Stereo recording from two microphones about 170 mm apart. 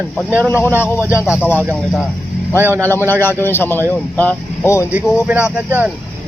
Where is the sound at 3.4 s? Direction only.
10° left (ahead or behind).